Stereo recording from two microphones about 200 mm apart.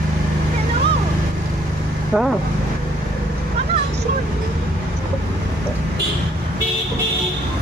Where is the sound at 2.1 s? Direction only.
Centre (ahead or behind).